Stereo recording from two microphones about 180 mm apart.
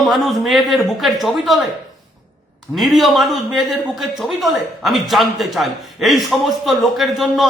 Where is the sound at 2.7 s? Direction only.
Centre (ahead or behind).